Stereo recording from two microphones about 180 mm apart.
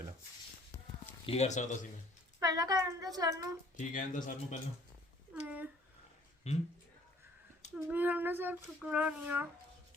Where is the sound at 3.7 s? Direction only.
45° left (ahead or behind).